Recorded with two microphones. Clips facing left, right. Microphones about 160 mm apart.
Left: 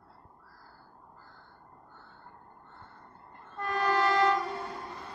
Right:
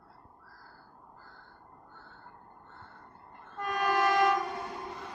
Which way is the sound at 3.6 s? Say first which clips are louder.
Left 1 dB; 15° right (ahead or behind).